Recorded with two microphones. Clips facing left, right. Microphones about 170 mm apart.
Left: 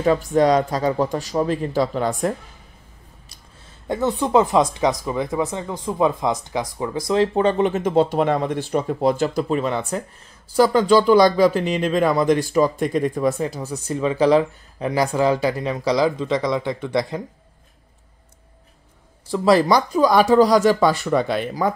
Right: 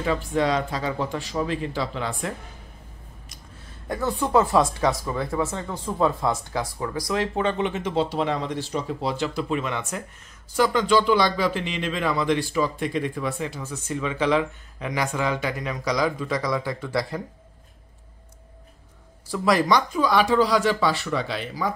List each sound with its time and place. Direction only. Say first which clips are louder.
0.0 s speech: left 6 dB; 40° left (ahead or behind)
3.8 s speech: left 4 dB; 20° left (ahead or behind)
19.3 s speech: left 5 dB; 30° left (ahead or behind); by 21.7 s 50° left (ahead or behind)